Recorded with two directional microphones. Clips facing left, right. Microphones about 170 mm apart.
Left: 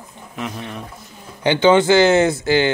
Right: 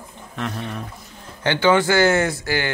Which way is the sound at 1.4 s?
20° left (ahead or behind).